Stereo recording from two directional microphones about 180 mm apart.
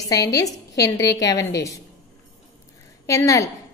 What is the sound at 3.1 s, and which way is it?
Speech, 15° left (ahead or behind).